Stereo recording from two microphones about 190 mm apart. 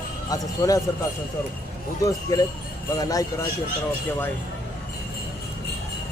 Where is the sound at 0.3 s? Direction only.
20° left (ahead or behind).